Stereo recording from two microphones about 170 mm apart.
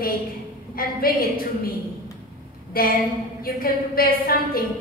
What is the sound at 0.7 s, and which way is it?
Speech, 60° left (ahead or behind).